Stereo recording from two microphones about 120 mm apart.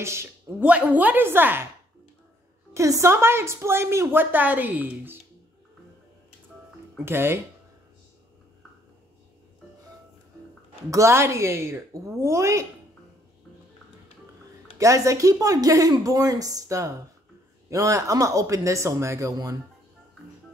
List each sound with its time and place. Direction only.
0.0 s a woman's voice: 20° right (ahead or behind)
0.6 s a woman's voice: 10° right (ahead or behind)
2.7 s a woman's voice: 25° right (ahead or behind)
7.1 s a woman's voice: 20° right (ahead or behind)
10.9 s a woman's voice: 25° right (ahead or behind)
14.8 s a woman's voice: 25° right (ahead or behind)